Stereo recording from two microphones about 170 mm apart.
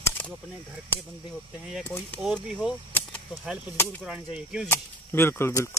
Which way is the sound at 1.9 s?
10° left (ahead or behind).